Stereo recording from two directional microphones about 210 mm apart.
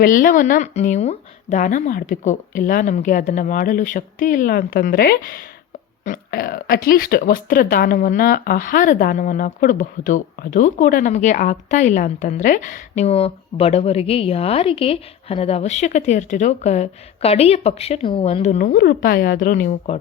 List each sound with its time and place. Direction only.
0.0 s speech: 40° left (ahead or behind)